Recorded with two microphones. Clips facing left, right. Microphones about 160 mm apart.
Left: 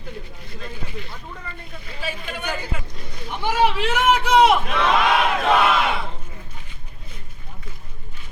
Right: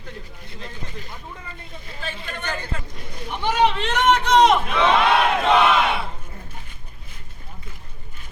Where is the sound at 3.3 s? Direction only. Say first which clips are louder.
Even; 10° left (ahead or behind).